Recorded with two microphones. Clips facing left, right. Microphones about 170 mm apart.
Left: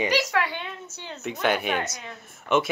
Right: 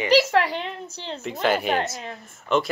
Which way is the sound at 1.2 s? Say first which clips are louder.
Right 2 dB; centre (ahead or behind).